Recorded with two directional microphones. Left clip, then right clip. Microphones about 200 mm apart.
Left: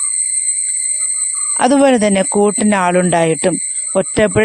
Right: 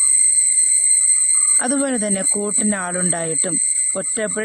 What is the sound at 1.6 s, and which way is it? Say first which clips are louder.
Speech: left 10 dB; 35° left (ahead or behind).